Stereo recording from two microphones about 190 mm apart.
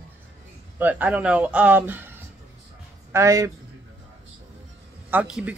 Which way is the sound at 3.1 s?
15° right (ahead or behind).